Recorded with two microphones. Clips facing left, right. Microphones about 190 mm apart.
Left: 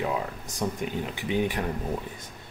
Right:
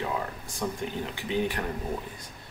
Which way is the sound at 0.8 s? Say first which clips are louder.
Left 2 dB; 15° left (ahead or behind).